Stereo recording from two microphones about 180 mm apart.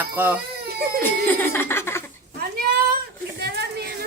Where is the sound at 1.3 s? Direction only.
15° left (ahead or behind).